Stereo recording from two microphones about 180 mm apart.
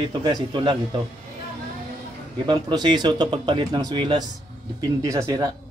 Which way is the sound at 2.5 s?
25° right (ahead or behind).